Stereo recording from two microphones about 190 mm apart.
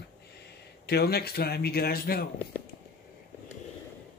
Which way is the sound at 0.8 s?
55° left (ahead or behind).